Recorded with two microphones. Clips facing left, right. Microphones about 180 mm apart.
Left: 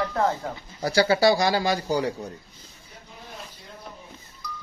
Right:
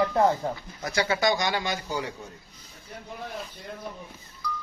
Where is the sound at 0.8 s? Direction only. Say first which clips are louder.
Left 6 dB; 35° left (ahead or behind).